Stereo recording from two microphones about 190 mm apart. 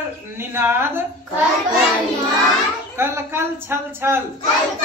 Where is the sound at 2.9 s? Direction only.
15° right (ahead or behind).